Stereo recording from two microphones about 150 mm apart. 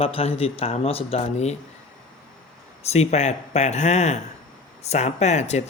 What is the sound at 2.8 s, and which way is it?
Speech, 45° left (ahead or behind).